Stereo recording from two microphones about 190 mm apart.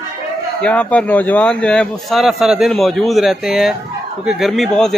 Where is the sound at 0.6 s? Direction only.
5° left (ahead or behind).